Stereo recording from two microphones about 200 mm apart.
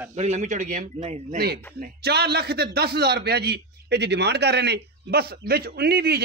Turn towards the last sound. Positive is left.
turn(degrees=-50)  # may be behind; listen again after turning